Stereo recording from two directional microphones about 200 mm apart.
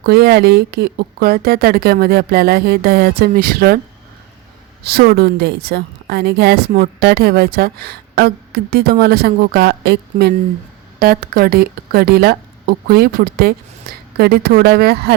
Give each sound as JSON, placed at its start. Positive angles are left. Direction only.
{"t": 0.0, "sound": "a woman's voice", "side_deg": -55}
{"t": 4.8, "sound": "a woman's voice", "side_deg": -50}